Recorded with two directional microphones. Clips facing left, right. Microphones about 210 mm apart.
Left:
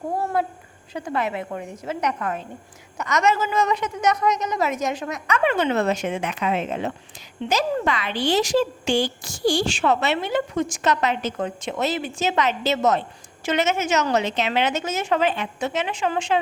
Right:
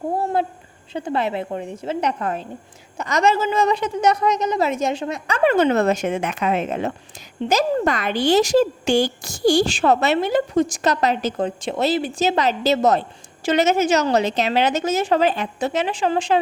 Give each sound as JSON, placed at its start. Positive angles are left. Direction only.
{"t": 0.9, "sound": "a woman's voice", "side_deg": -30}